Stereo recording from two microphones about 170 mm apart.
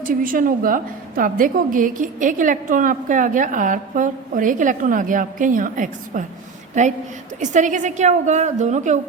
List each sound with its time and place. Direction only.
0.1 s a woman's voice: 55° right (ahead or behind)